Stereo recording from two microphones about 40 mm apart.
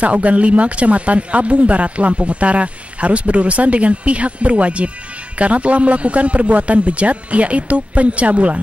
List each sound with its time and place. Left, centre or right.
0.0 s speech: right